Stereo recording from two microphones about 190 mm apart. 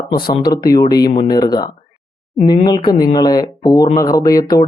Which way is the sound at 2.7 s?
20° left (ahead or behind).